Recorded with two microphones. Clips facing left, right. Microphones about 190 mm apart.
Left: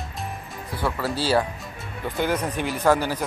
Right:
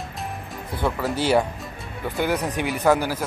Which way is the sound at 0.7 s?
20° right (ahead or behind).